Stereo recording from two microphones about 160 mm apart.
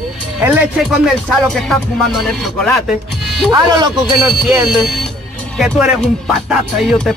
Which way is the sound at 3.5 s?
25° right (ahead or behind).